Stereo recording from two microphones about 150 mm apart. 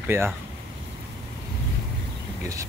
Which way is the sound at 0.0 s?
15° right (ahead or behind).